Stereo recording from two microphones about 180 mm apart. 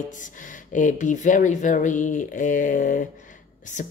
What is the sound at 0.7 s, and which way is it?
Speech, 45° left (ahead or behind).